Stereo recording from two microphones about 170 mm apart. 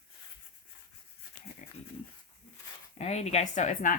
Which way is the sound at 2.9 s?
40° left (ahead or behind).